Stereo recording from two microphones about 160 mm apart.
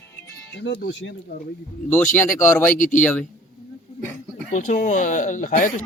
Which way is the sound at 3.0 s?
10° left (ahead or behind).